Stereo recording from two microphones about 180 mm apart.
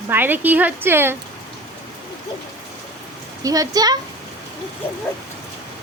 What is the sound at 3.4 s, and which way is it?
Speech, 20° right (ahead or behind).